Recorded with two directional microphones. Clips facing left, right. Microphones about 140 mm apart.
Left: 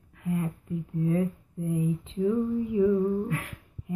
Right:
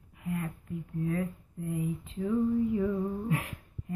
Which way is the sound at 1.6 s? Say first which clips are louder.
Left 5 dB; 20° left (ahead or behind).